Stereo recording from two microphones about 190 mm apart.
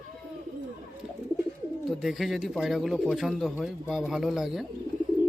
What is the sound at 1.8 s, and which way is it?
Speech, centre (ahead or behind).